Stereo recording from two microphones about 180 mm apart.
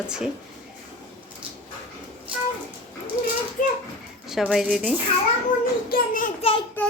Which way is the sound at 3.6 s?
50° left (ahead or behind).